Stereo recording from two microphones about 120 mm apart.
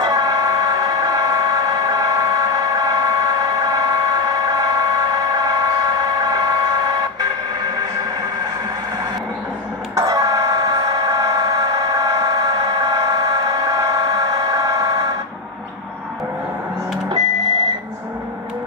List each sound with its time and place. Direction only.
0.0 s vehicle: 35° right (ahead or behind)
9.9 s vehicle: 30° right (ahead or behind)